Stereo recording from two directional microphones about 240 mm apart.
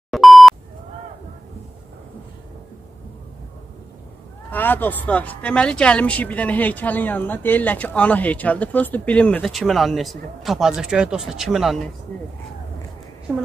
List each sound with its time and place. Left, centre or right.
0.1 s beep: centre
4.5 s speech: centre